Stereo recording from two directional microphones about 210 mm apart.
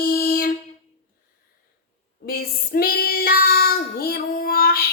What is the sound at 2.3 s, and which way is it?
Child singing, 45° left (ahead or behind).